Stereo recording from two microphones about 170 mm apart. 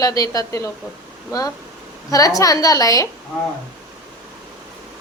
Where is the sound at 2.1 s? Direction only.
20° left (ahead or behind).